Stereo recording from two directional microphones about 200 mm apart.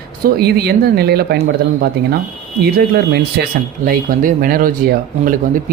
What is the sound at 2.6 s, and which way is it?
Speech, 55° right (ahead or behind).